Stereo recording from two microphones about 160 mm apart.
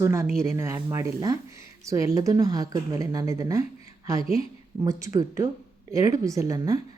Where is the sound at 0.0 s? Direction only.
15° right (ahead or behind).